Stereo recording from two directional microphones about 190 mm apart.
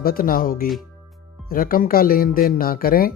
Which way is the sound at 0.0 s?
50° left (ahead or behind).